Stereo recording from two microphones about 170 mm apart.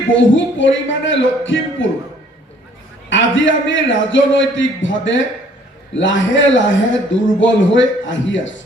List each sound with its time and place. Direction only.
0.1 s a man's voice: 90° left
3.1 s a man's voice: 90° left